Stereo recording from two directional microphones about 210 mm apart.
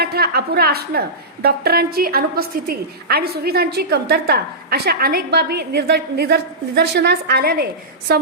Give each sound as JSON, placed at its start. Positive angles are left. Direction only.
{"t": 0.0, "sound": "a woman's voice", "side_deg": -50}